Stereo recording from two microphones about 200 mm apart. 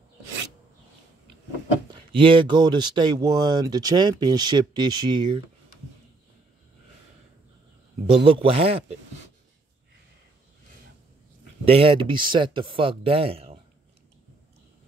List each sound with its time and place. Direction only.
2.1 s speech: 25° right (ahead or behind)
8.1 s speech: 25° right (ahead or behind)
11.6 s speech: 30° right (ahead or behind)